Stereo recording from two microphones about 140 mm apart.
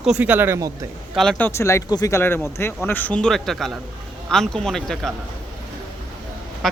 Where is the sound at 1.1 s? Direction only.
Centre (ahead or behind).